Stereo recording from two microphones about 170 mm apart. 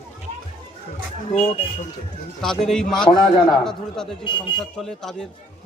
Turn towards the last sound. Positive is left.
turn(degrees=5)  # may be behind; listen again after turning